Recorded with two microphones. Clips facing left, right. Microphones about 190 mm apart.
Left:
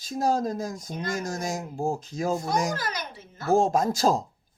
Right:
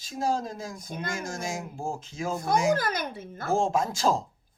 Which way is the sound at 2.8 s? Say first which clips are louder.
Right 4 dB; 55° right (ahead or behind).